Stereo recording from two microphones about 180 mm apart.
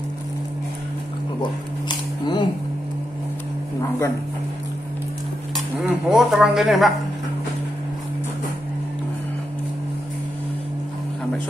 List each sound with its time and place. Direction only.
1.4 s shuffling cards: 25° left (ahead or behind)
5.9 s speech: centre (ahead or behind)